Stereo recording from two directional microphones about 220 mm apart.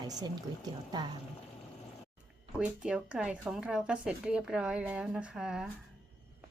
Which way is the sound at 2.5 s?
5° right (ahead or behind).